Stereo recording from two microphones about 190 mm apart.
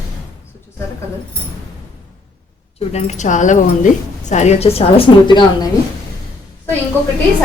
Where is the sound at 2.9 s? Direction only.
35° left (ahead or behind).